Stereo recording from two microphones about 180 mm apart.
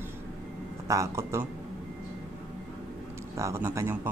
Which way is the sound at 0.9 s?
15° right (ahead or behind).